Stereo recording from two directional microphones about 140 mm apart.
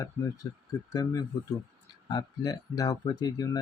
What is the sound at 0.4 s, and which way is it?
Speech, 25° left (ahead or behind).